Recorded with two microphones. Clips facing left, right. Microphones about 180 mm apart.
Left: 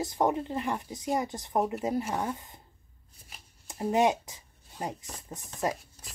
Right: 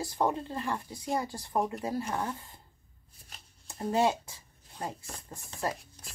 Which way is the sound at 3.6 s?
15° left (ahead or behind).